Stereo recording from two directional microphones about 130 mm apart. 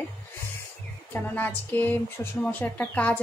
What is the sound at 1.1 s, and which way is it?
A woman's voice, 15° left (ahead or behind).